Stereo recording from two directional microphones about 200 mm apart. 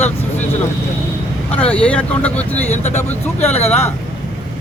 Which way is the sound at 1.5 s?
5° left (ahead or behind).